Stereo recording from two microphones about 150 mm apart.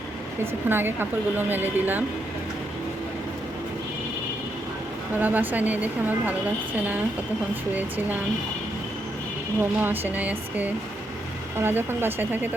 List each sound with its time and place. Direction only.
0.7 s a woman's voice: 15° right (ahead or behind)
5.2 s a woman's voice: 10° right (ahead or behind)
9.6 s a woman's voice: 15° right (ahead or behind)